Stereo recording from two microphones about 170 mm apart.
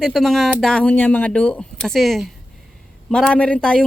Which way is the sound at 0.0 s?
Centre (ahead or behind).